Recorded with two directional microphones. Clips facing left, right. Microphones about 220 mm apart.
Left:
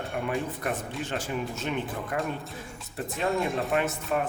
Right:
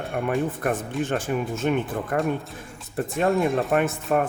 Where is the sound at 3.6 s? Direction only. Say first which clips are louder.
Right 5 dB; 50° right (ahead or behind).